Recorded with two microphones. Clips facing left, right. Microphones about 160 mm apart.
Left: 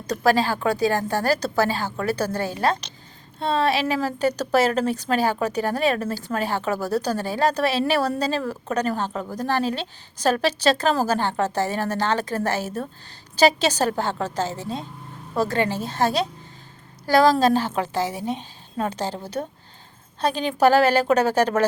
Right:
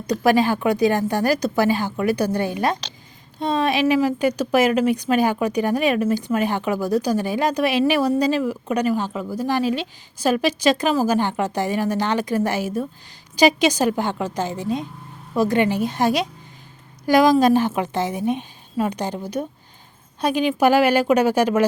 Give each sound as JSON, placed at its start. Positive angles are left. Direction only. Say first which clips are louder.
{"t": 0.3, "sound": "a woman's voice", "louder": "right 2 dB", "side_deg": -20}